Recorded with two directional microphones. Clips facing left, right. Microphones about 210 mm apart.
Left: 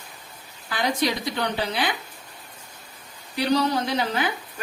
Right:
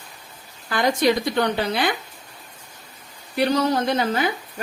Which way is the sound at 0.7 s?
50° right (ahead or behind).